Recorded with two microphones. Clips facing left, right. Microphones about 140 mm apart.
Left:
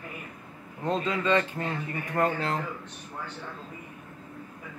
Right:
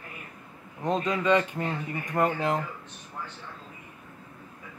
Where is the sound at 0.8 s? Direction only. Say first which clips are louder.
Right 2 dB; 15° right (ahead or behind).